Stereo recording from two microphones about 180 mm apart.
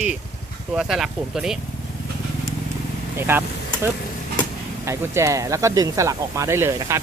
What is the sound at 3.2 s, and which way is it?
Speech, 15° right (ahead or behind).